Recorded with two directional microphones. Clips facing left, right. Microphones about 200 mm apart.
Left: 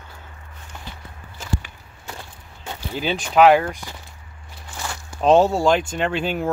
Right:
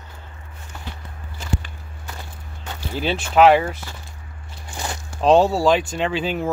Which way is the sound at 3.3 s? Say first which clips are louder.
Even; centre (ahead or behind).